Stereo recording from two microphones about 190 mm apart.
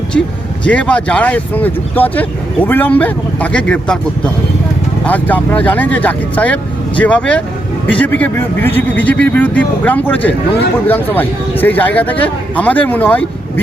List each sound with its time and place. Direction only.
0.6 s a man's voice: 5° left (ahead or behind)
5.0 s a man's voice: 10° left (ahead or behind)